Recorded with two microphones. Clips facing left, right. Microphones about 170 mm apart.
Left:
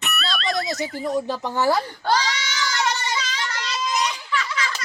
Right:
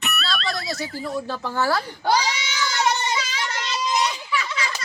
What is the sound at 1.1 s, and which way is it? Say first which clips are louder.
Speech: left 2 dB; 15° left (ahead or behind).